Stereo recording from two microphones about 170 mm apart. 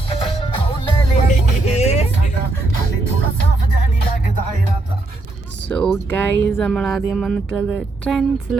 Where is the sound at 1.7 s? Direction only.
40° left (ahead or behind).